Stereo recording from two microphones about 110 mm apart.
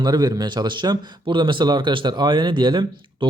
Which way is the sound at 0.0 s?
35° right (ahead or behind).